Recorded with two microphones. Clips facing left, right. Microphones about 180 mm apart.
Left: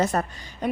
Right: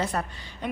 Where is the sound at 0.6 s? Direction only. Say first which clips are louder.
Left 5 dB; 45° left (ahead or behind).